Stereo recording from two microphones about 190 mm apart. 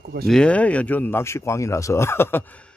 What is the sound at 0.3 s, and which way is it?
A man's voice, 5° left (ahead or behind).